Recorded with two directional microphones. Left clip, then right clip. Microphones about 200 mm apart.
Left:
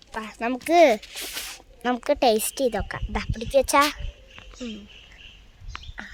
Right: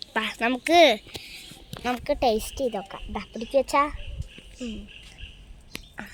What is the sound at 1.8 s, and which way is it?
A woman's voice, 20° left (ahead or behind).